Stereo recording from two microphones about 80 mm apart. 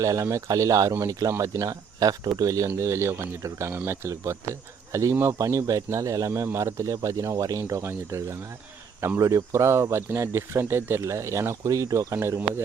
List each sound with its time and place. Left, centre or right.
0.0 s speech: right
2.6 s speech: right
7.6 s speech: right